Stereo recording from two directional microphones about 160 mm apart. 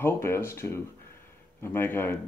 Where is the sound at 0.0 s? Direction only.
15° left (ahead or behind).